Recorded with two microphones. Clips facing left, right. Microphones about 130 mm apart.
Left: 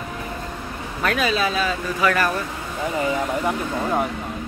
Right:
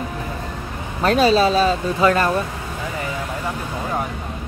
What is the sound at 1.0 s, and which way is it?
Speech, 30° right (ahead or behind).